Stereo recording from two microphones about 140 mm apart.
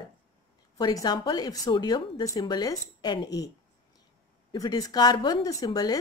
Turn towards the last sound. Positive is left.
turn(degrees=30)  # may be behind; listen again after turning